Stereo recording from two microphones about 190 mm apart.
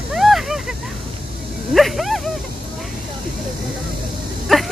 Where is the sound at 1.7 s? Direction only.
Centre (ahead or behind).